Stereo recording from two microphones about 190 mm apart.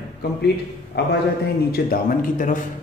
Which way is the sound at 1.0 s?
60° left (ahead or behind).